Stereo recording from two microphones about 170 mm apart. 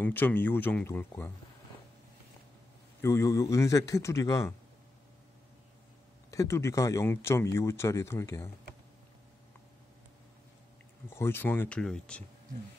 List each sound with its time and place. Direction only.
0.0 s speech: 10° left (ahead or behind)
3.0 s speech: 15° left (ahead or behind)
6.3 s speech: 15° left (ahead or behind)
11.1 s speech: 15° left (ahead or behind)